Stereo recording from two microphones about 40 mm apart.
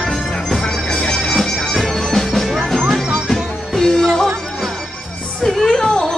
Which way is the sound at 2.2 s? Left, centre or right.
Centre.